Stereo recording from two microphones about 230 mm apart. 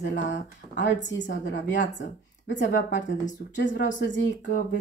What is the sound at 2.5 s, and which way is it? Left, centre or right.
Speech, left.